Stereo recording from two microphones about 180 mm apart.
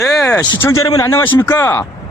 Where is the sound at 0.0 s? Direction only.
20° left (ahead or behind).